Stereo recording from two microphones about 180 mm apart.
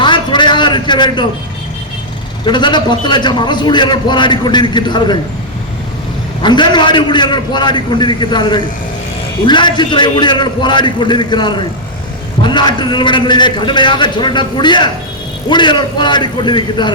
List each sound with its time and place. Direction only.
0.0 s a sound: 25° left (ahead or behind)
2.4 s a man's voice: 25° left (ahead or behind)
6.4 s a man's voice: 25° left (ahead or behind)